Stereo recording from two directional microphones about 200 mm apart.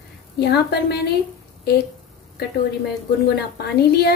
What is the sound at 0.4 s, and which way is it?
Speech, 55° left (ahead or behind).